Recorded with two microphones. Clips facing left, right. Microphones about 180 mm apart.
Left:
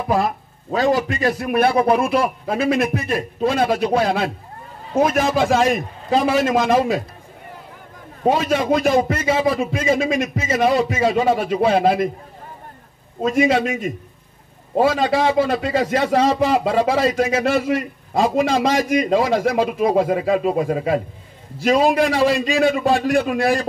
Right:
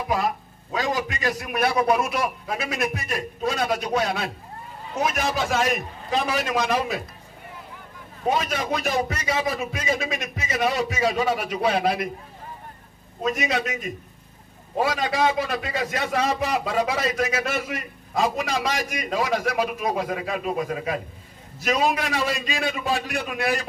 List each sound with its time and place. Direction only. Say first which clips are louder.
0.1 s a man's voice: left 6 dB; 35° left (ahead or behind)
5.5 s a man's voice: left 6 dB; 30° left (ahead or behind)
6.4 s a man's voice: left 7 dB; 45° left (ahead or behind)
8.2 s a man's voice: left 7 dB; 30° left (ahead or behind)
13.2 s a man's voice: left 8 dB; 30° left (ahead or behind)